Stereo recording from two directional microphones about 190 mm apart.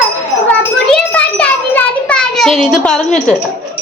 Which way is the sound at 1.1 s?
5° left (ahead or behind).